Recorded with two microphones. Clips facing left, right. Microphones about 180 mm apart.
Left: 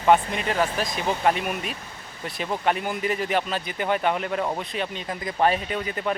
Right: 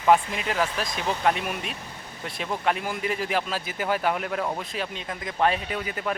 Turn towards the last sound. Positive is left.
turn(degrees=-5)  # may be behind; listen again after turning